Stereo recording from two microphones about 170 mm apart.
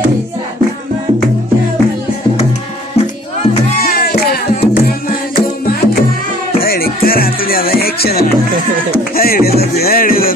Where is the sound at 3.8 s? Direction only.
60° left (ahead or behind).